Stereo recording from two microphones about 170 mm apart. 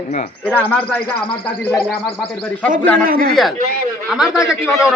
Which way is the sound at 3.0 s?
60° right (ahead or behind).